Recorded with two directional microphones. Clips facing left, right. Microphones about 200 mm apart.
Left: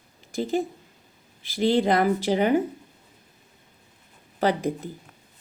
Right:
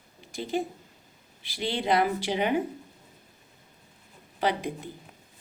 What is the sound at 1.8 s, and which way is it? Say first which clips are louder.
Speech: left 4 dB; 45° left (ahead or behind).